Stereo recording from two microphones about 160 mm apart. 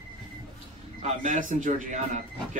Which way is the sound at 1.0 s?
55° right (ahead or behind).